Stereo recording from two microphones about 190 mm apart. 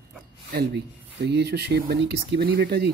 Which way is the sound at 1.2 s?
60° right (ahead or behind).